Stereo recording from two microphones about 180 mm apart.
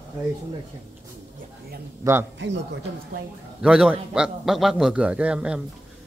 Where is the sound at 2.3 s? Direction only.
90° right.